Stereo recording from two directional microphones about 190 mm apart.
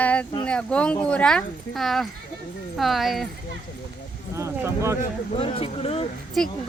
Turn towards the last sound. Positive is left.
turn(degrees=5)  # may be behind; listen again after turning